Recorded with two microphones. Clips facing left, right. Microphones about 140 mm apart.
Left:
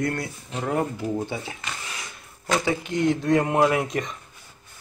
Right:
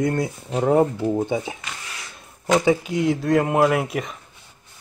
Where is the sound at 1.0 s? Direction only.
20° right (ahead or behind).